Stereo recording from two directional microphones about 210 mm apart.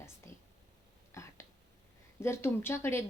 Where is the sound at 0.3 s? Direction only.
25° right (ahead or behind).